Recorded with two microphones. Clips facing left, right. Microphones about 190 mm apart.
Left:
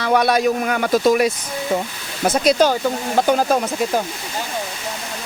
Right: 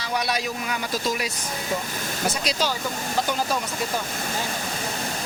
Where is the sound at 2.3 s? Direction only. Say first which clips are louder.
Left 11 dB; 50° left (ahead or behind).